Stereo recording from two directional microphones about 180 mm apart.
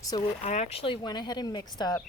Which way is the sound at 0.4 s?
35° left (ahead or behind).